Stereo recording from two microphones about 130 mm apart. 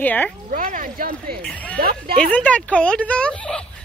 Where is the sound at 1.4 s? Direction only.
10° left (ahead or behind).